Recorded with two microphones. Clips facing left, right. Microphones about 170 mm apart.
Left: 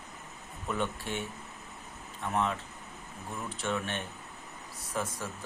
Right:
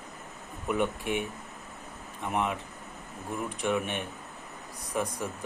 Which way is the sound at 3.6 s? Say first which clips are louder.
Right 4 dB; 10° right (ahead or behind).